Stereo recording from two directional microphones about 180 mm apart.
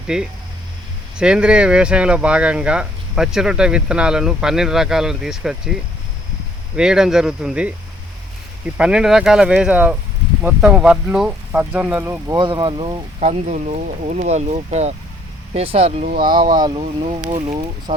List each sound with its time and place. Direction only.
0.1 s speech: 5° right (ahead or behind)
6.7 s speech: 5° right (ahead or behind)
12.4 s speech: 25° right (ahead or behind)